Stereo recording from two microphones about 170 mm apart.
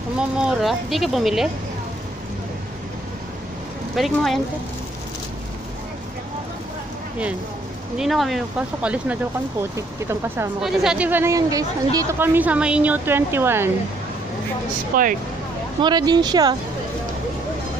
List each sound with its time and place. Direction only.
0.4 s speech: 5° right (ahead or behind)
3.9 s speech: centre (ahead or behind)
8.0 s speech: centre (ahead or behind)
10.6 s speech: 5° right (ahead or behind)
14.9 s speech: 55° right (ahead or behind)
15.8 s speech: 25° right (ahead or behind)